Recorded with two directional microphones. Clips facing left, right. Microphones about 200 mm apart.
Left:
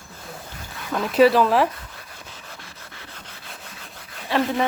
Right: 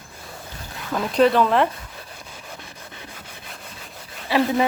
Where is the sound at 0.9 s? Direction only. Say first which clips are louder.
Left 1 dB; centre (ahead or behind).